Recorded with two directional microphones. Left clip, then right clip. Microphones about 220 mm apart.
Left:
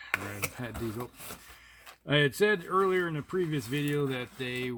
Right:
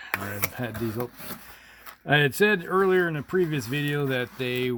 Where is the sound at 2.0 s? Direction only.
50° right (ahead or behind).